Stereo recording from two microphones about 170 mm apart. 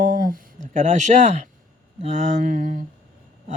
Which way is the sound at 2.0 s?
40° right (ahead or behind).